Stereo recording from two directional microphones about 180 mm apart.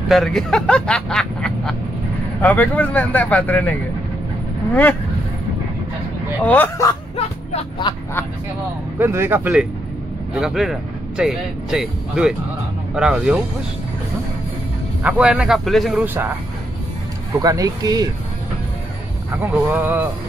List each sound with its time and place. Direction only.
0.1 s speech: centre (ahead or behind)
6.4 s speech: 10° left (ahead or behind)
7.2 s a sound: 35° left (ahead or behind)
9.0 s speech: 10° right (ahead or behind)
15.0 s speech: 10° right (ahead or behind)
17.4 s speech: 20° right (ahead or behind)
19.3 s speech: 10° right (ahead or behind)